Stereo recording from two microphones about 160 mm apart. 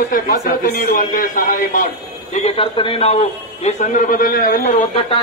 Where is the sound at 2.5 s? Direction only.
35° left (ahead or behind); by 4.8 s 55° left (ahead or behind).